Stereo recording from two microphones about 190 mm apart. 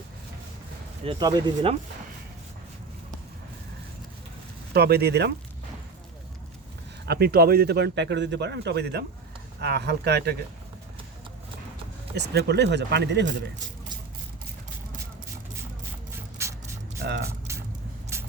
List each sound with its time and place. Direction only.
1.0 s speech: 20° right (ahead or behind)
4.7 s a man's voice: 55° right (ahead or behind)
7.0 s a man's voice: 60° right (ahead or behind)
12.1 s a man's voice: 60° right (ahead or behind)
16.4 s a sound: 15° right (ahead or behind)
17.0 s speech: 60° right (ahead or behind)
17.5 s vehicle: 15° right (ahead or behind)